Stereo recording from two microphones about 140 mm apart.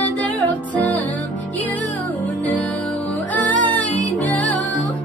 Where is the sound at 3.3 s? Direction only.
10° left (ahead or behind).